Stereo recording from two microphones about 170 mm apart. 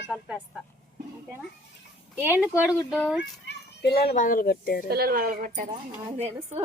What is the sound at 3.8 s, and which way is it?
Speech, 65° left (ahead or behind).